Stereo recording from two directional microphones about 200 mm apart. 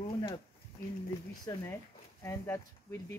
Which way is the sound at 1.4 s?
20° left (ahead or behind).